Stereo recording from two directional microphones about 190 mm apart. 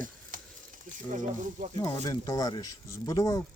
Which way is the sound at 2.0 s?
20° left (ahead or behind).